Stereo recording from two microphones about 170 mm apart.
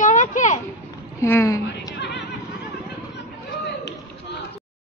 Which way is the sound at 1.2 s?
15° left (ahead or behind).